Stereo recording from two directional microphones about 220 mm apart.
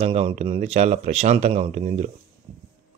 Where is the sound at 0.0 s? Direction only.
25° right (ahead or behind).